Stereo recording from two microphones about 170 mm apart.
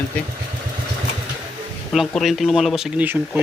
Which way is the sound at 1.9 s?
Centre (ahead or behind).